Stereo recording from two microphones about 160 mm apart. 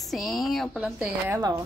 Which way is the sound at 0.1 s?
Centre (ahead or behind).